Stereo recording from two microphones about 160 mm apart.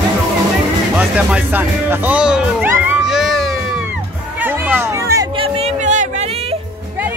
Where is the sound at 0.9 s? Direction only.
10° right (ahead or behind).